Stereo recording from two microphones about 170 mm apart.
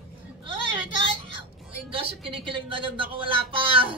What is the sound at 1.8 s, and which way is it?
A woman's voice, 30° right (ahead or behind).